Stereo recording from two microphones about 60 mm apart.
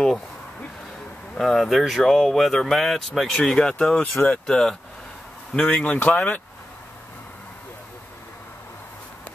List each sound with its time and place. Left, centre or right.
1.3 s speech: centre
5.9 s speech: left